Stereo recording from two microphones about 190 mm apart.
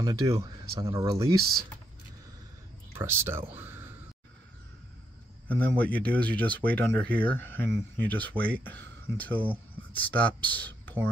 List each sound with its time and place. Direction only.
0.0 s speech: 20° right (ahead or behind)
1.4 s speech: 50° right (ahead or behind)
3.0 s speech: 15° right (ahead or behind)
5.5 s speech: 5° left (ahead or behind)